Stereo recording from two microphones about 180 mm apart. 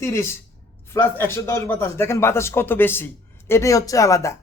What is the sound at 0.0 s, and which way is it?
Speech, 15° left (ahead or behind).